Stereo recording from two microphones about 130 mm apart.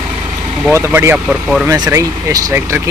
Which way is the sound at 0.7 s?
15° right (ahead or behind).